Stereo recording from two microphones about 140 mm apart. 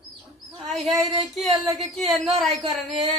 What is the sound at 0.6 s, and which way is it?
Speech, centre (ahead or behind).